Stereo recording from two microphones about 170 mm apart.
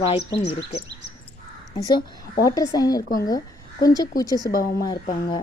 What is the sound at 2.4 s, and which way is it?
Speech, 20° left (ahead or behind).